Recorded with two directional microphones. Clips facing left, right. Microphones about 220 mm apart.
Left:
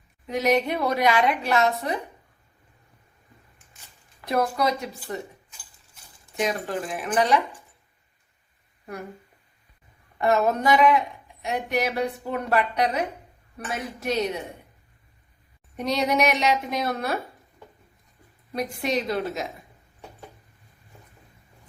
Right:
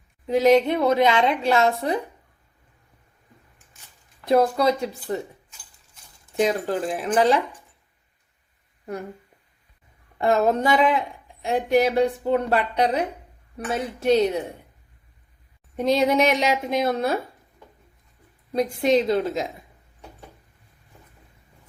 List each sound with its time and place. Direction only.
0.3 s a woman's voice: 30° right (ahead or behind)
4.3 s a woman's voice: 30° right (ahead or behind)
6.3 s speech: 30° right (ahead or behind)
10.2 s a woman's voice: 30° right (ahead or behind)
15.7 s a woman's voice: 25° right (ahead or behind)
18.5 s a woman's voice: 25° right (ahead or behind)